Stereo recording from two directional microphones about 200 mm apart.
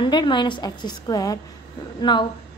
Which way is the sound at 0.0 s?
20° left (ahead or behind).